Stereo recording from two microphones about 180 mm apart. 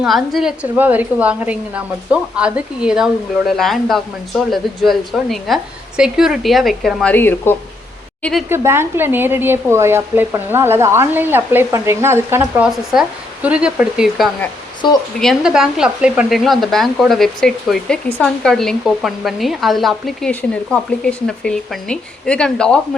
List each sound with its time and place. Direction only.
0.0 s speech: centre (ahead or behind)
8.2 s speech: centre (ahead or behind)
8.4 s speech: 15° right (ahead or behind)
14.8 s speech: 25° left (ahead or behind)
15.2 s speech: centre (ahead or behind)